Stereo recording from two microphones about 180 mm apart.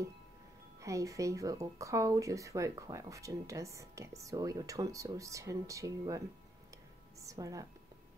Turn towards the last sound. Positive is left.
turn(degrees=-20)  # may be behind; listen again after turning